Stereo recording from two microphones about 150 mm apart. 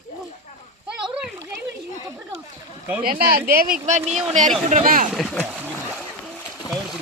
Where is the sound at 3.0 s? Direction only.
80° right.